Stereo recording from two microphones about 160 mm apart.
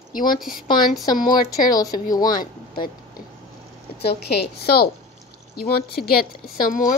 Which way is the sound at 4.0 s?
90° left.